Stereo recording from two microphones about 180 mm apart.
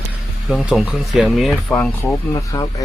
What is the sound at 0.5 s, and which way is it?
Speech, centre (ahead or behind).